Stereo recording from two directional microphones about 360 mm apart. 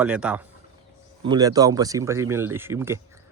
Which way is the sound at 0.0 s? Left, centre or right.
Centre.